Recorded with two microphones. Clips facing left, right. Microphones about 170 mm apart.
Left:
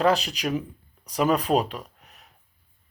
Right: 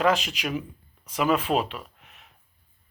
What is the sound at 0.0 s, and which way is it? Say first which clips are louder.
Speech: left 1 dB; 35° left (ahead or behind).